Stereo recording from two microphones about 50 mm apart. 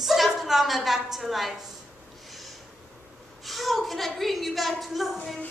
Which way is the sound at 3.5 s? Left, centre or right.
Centre.